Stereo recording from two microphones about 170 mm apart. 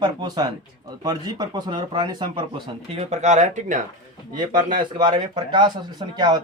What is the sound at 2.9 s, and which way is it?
Speech, 40° right (ahead or behind).